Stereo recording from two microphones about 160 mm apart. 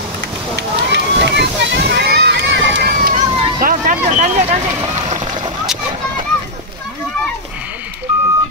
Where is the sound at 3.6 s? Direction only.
55° right (ahead or behind).